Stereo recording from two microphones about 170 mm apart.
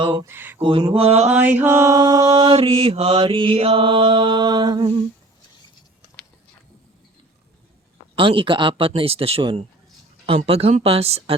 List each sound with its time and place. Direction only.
0.0 s mantra: 30° right (ahead or behind)
0.3 s speech: 10° right (ahead or behind)
0.6 s mantra: 30° right (ahead or behind)
1.5 s mantra: 15° right (ahead or behind)
8.1 s mantra: 30° right (ahead or behind)